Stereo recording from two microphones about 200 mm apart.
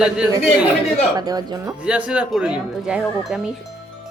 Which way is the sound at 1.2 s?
20° right (ahead or behind).